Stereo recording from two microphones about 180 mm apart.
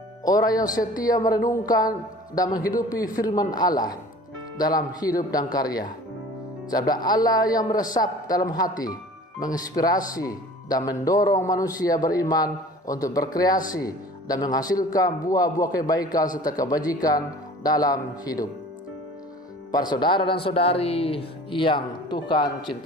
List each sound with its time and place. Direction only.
0.3 s speech: 20° left (ahead or behind)
19.7 s speech: 25° left (ahead or behind)